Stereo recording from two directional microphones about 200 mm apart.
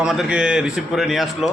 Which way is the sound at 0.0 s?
Centre (ahead or behind).